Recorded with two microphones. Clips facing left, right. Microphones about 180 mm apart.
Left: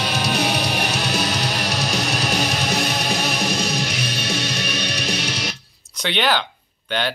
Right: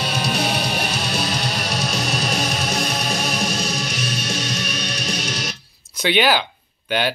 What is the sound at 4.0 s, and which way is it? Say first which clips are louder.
Music: left 1 dB; 60° left (ahead or behind).